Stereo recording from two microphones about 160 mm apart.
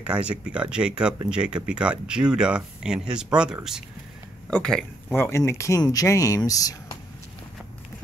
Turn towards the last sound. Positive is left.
turn(degrees=20)  # may be behind; listen again after turning